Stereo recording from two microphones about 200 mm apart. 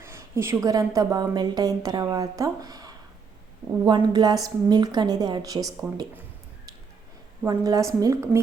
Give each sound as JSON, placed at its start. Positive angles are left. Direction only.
{"t": 0.0, "sound": "a woman's voice", "side_deg": -15}
{"t": 7.4, "sound": "a woman's voice", "side_deg": -20}